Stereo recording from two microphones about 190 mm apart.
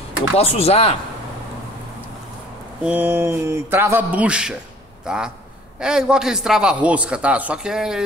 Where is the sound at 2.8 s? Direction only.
10° right (ahead or behind).